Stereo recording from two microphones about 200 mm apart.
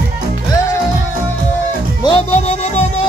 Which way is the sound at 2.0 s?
35° left (ahead or behind).